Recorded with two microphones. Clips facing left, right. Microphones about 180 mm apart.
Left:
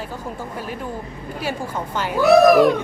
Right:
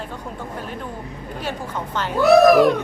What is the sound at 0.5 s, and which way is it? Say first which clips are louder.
A woman's voice: left 2 dB; 5° left (ahead or behind).